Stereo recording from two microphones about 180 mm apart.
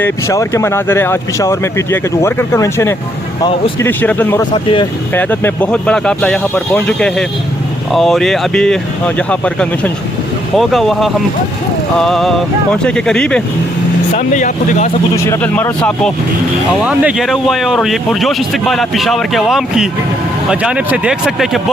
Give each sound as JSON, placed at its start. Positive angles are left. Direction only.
{"t": 0.0, "sound": "speech", "side_deg": 15}
{"t": 4.5, "sound": "speech", "side_deg": 25}
{"t": 5.1, "sound": "speech", "side_deg": 10}
{"t": 14.2, "sound": "speech", "side_deg": 45}
{"t": 15.1, "sound": "speech", "side_deg": 10}
{"t": 16.8, "sound": "speech", "side_deg": -5}